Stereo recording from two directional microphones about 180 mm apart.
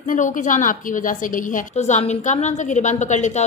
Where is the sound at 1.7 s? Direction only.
40° left (ahead or behind).